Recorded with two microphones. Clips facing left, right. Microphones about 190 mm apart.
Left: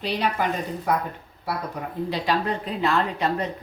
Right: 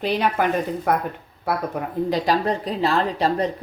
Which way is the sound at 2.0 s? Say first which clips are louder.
Right 4 dB; 45° right (ahead or behind).